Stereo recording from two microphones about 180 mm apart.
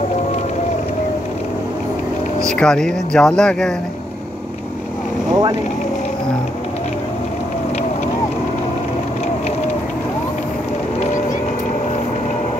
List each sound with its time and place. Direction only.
2.6 s speech: 5° left (ahead or behind)
5.3 s speech: 20° right (ahead or behind)